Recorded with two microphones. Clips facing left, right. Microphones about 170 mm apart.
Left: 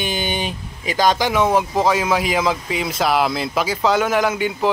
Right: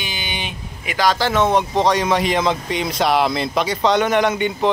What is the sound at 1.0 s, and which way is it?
Speech, 15° left (ahead or behind).